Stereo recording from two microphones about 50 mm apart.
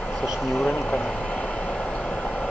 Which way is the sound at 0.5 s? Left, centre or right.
Centre.